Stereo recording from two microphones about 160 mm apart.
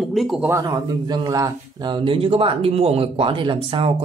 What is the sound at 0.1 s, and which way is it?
Speech, centre (ahead or behind).